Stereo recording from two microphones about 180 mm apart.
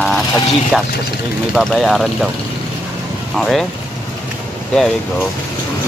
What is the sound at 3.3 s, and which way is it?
Speech, centre (ahead or behind).